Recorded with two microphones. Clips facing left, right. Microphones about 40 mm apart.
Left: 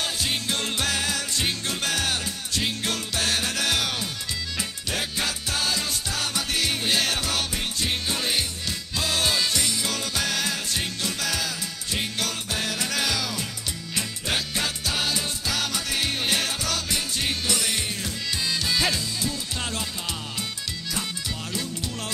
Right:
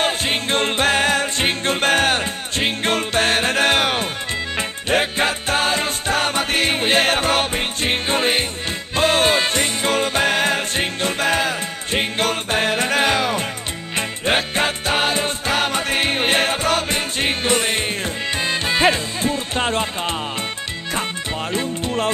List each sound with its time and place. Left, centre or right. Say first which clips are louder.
0.0 s music: right 7 dB; right
21.5 s music: right 10 dB; right